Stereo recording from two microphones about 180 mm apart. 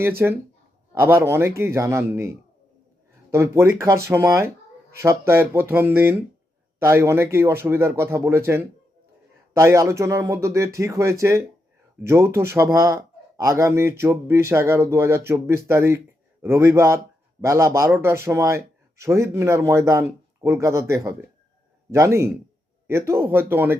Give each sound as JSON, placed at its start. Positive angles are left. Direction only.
{"t": 0.2, "sound": "a man's voice", "side_deg": -10}
{"t": 3.3, "sound": "a man's voice", "side_deg": -15}